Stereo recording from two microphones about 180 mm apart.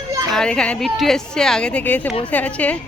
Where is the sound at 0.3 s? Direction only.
5° left (ahead or behind).